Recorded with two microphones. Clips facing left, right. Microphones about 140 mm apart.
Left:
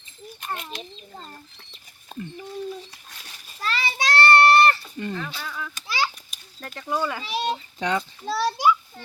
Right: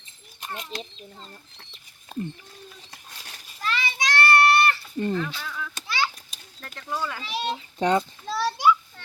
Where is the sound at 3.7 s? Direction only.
35° left (ahead or behind).